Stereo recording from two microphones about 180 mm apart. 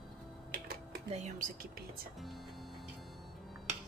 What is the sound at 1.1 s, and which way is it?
Speech, 40° right (ahead or behind).